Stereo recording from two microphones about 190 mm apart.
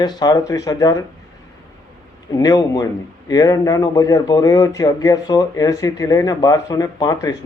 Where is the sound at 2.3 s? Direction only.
20° left (ahead or behind).